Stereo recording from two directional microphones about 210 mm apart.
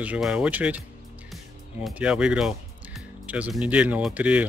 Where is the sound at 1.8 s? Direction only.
5° right (ahead or behind).